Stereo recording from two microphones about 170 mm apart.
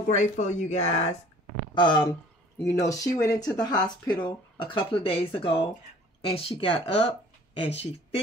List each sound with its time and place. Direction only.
0.1 s speech: 45° left (ahead or behind)
1.8 s speech: 30° left (ahead or behind)